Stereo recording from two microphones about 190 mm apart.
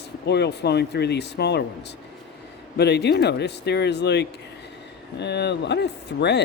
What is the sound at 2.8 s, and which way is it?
Speech, 60° left (ahead or behind).